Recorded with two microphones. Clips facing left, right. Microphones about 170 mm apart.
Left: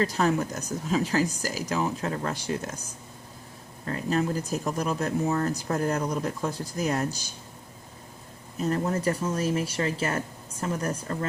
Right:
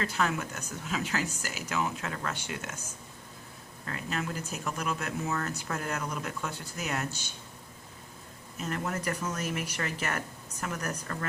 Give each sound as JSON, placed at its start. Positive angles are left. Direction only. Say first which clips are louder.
{"t": 0.0, "sound": "speech", "louder": "left 6 dB", "side_deg": 35}
{"t": 8.5, "sound": "speech", "louder": "left 7 dB", "side_deg": 35}